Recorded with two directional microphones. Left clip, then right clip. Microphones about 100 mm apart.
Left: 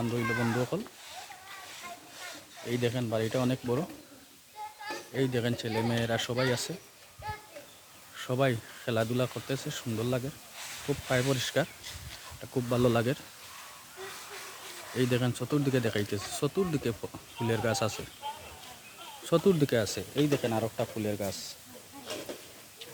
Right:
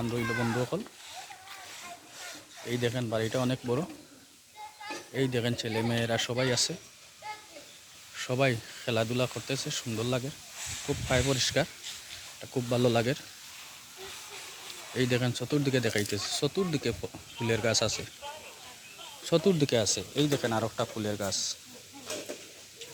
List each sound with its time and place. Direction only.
0.0 s speech: 30° left (ahead or behind)
2.1 s a sound: centre (ahead or behind)
2.8 s speech: 20° left (ahead or behind)
5.1 s speech: centre (ahead or behind)
8.1 s speech: 10° left (ahead or behind)
11.3 s speech: 20° left (ahead or behind)
14.9 s speech: 20° left (ahead or behind)
19.2 s speech: 25° left (ahead or behind)
20.2 s speech: 5° left (ahead or behind)